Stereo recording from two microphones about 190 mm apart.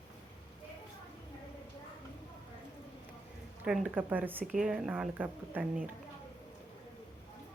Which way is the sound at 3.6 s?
5° right (ahead or behind).